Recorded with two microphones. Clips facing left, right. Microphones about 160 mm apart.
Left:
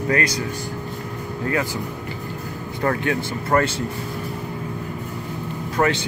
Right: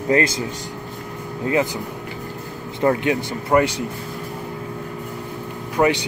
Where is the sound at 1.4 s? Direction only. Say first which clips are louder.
Right 4 dB; 20° right (ahead or behind).